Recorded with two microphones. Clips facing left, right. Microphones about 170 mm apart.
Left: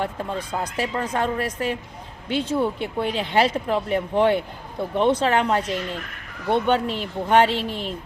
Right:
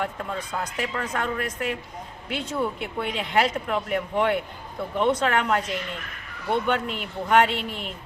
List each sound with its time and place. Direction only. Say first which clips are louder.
0.0 s speech: left 3 dB; 30° left (ahead or behind)